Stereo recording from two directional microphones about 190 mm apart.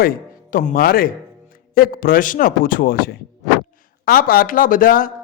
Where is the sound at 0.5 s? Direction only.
50° left (ahead or behind).